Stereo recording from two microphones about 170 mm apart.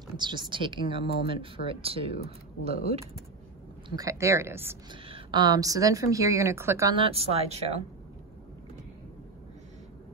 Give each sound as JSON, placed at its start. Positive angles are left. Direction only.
{"t": 0.2, "sound": "speech", "side_deg": -25}
{"t": 3.9, "sound": "speech", "side_deg": -20}
{"t": 5.0, "sound": "speech", "side_deg": -30}
{"t": 7.1, "sound": "speech", "side_deg": -35}